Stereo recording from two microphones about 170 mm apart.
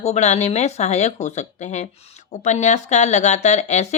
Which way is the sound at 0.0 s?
40° left (ahead or behind).